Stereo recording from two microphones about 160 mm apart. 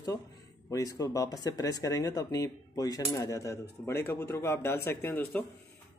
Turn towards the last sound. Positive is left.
turn(degrees=10)  # may be behind; listen again after turning